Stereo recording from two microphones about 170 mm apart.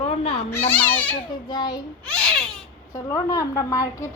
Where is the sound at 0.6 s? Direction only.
10° left (ahead or behind).